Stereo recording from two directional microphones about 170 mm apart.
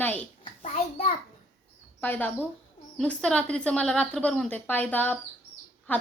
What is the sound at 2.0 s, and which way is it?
A woman's voice, 10° left (ahead or behind).